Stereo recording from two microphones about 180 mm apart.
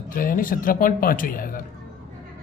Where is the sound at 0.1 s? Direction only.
50° left (ahead or behind).